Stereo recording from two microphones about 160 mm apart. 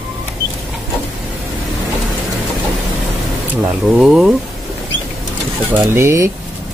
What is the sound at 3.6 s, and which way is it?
Speech, 5° right (ahead or behind).